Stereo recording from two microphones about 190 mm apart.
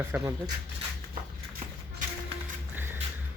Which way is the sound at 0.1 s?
15° right (ahead or behind).